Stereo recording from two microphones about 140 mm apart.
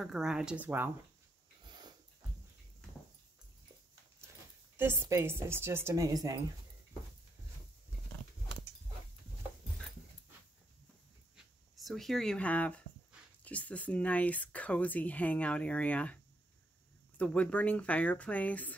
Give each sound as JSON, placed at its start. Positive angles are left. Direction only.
{"t": 0.0, "sound": "speech", "side_deg": -5}
{"t": 4.7, "sound": "a woman's voice", "side_deg": -15}
{"t": 11.7, "sound": "speech", "side_deg": 0}
{"t": 17.2, "sound": "speech", "side_deg": 10}